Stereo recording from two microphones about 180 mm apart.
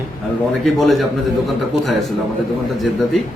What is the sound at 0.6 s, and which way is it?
Speech, centre (ahead or behind).